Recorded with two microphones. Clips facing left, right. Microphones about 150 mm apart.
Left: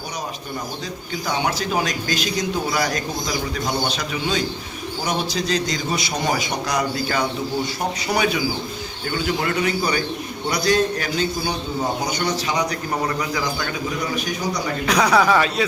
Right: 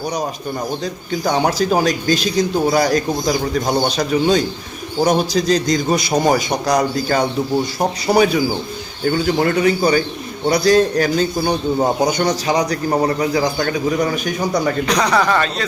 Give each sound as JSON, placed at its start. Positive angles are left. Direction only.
{"t": 1.2, "sound": "a man's voice", "side_deg": -40}
{"t": 14.8, "sound": "speech", "side_deg": 5}